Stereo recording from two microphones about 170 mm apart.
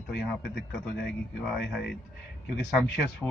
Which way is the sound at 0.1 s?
75° left (ahead or behind).